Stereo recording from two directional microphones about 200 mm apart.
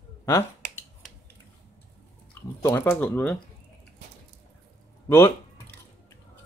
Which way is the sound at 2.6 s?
10° left (ahead or behind).